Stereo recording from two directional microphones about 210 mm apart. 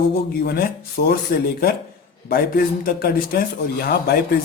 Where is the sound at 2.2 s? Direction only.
45° left (ahead or behind).